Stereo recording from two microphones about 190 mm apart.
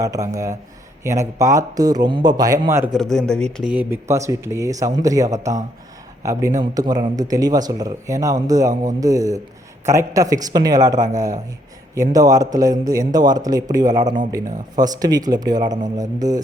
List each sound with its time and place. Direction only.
0.0 s speech: 20° right (ahead or behind)
2.9 s a man's voice: centre (ahead or behind); by 16.4 s 20° right (ahead or behind)